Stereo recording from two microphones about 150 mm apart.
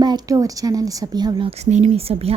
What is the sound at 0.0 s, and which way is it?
Speech, 25° right (ahead or behind).